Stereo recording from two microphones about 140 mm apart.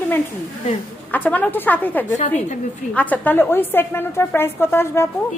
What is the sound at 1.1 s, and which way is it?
A woman's voice, 10° left (ahead or behind).